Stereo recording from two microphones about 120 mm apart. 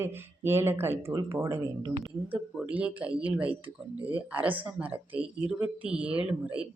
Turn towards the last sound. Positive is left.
turn(degrees=-10)  # may be behind; listen again after turning